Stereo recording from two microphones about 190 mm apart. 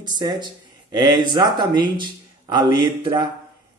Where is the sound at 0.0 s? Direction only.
20° right (ahead or behind).